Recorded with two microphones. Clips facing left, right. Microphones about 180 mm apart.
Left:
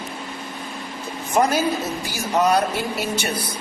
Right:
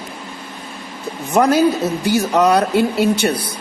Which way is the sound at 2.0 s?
65° right (ahead or behind).